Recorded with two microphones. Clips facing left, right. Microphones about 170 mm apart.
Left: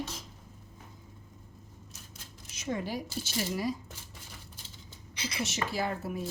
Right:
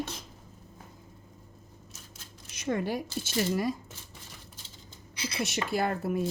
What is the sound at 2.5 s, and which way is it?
Speech, 55° right (ahead or behind).